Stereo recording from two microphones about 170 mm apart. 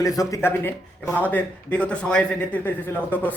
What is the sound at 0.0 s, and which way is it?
A man's voice, 20° left (ahead or behind).